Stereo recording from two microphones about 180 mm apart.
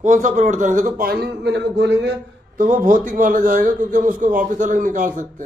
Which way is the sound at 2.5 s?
45° right (ahead or behind).